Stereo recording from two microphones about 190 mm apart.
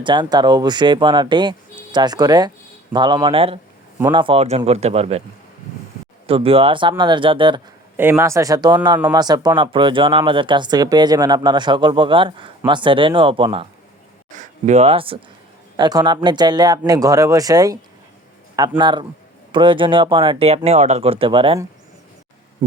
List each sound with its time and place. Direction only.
0.0 s speech: 25° right (ahead or behind)
6.2 s speech: 30° right (ahead or behind)
7.9 s speech: 10° right (ahead or behind); by 13.7 s 30° right (ahead or behind)
14.3 s a sound: 40° right (ahead or behind)
15.8 s speech: 20° right (ahead or behind)